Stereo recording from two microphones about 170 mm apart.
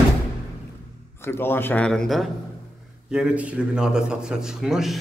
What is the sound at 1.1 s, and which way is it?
A man's voice, 15° left (ahead or behind).